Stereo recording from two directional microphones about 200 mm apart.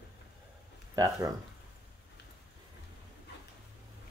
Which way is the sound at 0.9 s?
15° right (ahead or behind).